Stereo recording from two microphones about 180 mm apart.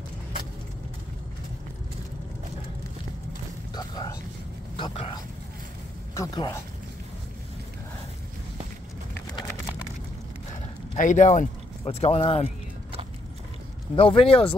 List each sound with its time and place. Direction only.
3.7 s a sound: 25° left (ahead or behind)
4.7 s speech: 30° left (ahead or behind)
11.0 s speech: 45° left (ahead or behind)
13.9 s speech: 30° left (ahead or behind)